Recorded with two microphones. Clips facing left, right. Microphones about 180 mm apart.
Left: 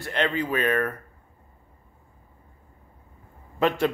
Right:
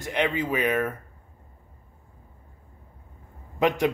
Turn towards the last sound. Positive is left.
turn(degrees=-15)  # may be behind; listen again after turning